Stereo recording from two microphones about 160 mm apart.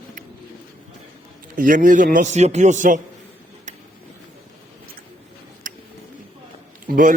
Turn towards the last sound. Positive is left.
turn(degrees=-55)  # may be behind; listen again after turning